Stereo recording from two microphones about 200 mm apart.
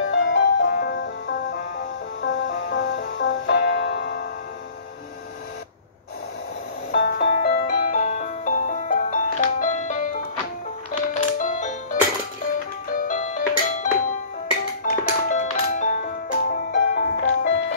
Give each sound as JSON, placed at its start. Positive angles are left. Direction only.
{"t": 0.0, "sound": "music", "side_deg": 65}
{"t": 2.2, "sound": "music", "side_deg": 65}
{"t": 6.9, "sound": "music", "side_deg": 60}
{"t": 7.2, "sound": "music", "side_deg": 40}
{"t": 14.9, "sound": "music", "side_deg": 40}